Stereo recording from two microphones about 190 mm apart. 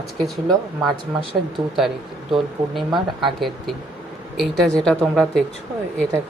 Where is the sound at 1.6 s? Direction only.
30° right (ahead or behind).